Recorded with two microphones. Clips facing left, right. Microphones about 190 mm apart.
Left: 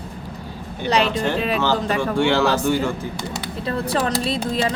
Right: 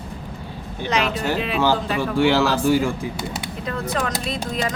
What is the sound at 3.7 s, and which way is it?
Speech, 35° left (ahead or behind).